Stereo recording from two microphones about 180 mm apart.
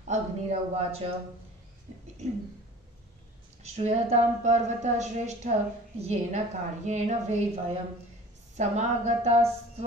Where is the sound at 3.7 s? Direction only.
35° right (ahead or behind).